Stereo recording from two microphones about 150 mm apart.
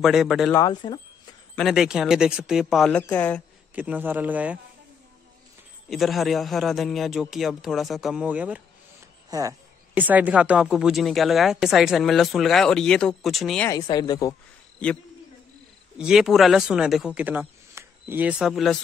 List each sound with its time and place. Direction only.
0.0 s a woman's voice: centre (ahead or behind)
0.6 s speech: 30° left (ahead or behind)
1.5 s a woman's voice: centre (ahead or behind)
3.7 s speech: 10° right (ahead or behind)
5.9 s a woman's voice: centre (ahead or behind)
9.3 s speech: 20° right (ahead or behind)
9.9 s a woman's voice: 10° right (ahead or behind)
13.7 s speech: 25° left (ahead or behind)
16.0 s speech: 5° right (ahead or behind)
18.4 s a woman's voice: centre (ahead or behind)